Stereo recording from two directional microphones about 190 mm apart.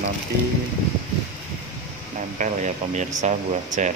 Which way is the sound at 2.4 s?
40° right (ahead or behind).